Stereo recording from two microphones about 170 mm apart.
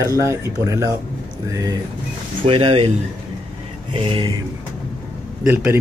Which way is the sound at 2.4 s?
35° right (ahead or behind).